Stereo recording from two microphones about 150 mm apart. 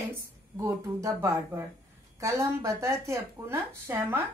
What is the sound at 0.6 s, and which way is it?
Speech, 20° right (ahead or behind).